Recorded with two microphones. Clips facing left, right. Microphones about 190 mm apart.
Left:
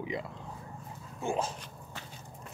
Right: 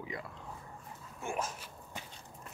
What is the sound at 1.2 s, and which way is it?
Speech, 30° left (ahead or behind).